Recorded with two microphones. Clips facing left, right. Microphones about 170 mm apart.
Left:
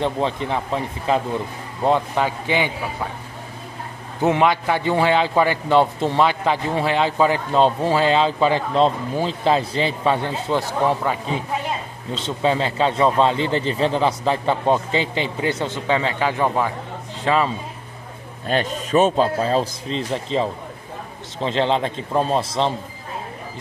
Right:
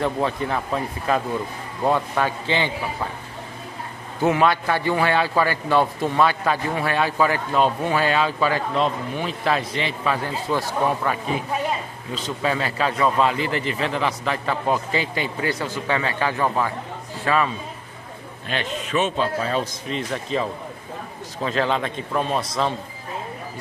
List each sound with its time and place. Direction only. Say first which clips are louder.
0.0 s a man's voice: left 1 dB; 20° left (ahead or behind)
4.2 s a man's voice: left 1 dB; 20° left (ahead or behind)
18.5 s a man's voice: left 6 dB; 40° left (ahead or behind)